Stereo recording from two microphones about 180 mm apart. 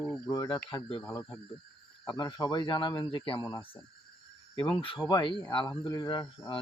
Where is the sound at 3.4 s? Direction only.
15° left (ahead or behind).